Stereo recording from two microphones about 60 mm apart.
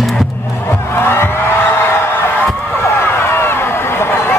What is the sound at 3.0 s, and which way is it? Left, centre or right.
Run, left.